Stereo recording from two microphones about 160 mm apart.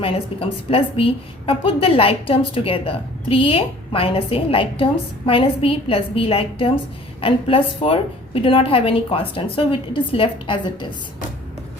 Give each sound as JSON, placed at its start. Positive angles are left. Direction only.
{"t": 0.0, "sound": "a woman's voice", "side_deg": 35}